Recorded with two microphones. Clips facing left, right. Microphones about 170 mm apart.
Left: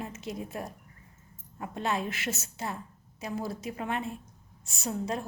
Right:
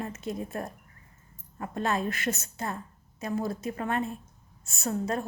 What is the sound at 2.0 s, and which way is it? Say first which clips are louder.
A woman's voice: right 4 dB; 5° left (ahead or behind).